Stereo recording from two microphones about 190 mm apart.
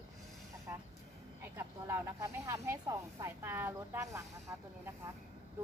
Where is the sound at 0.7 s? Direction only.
10° right (ahead or behind).